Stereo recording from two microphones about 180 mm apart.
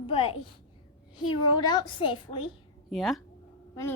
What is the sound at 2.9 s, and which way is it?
Speech, centre (ahead or behind).